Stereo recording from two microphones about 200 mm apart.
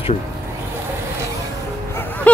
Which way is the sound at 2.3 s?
10° left (ahead or behind).